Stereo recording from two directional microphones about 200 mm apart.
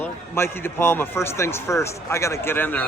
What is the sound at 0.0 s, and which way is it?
A man's voice, 10° left (ahead or behind).